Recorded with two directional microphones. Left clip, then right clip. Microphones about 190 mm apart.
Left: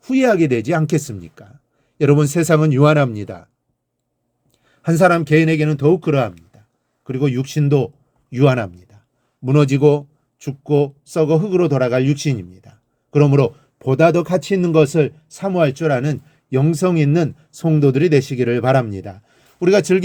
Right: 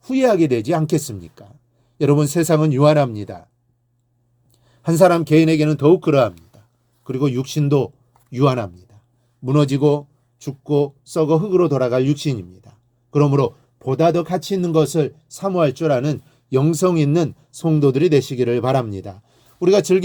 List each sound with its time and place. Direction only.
0.0 s speech: 5° left (ahead or behind)
4.5 s speech: centre (ahead or behind)
13.8 s speech: 25° left (ahead or behind)
14.4 s speech: 15° left (ahead or behind)